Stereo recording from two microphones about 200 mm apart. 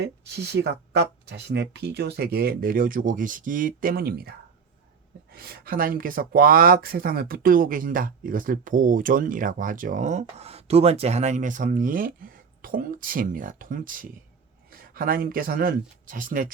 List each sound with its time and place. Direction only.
0.0 s speech: 55° right (ahead or behind)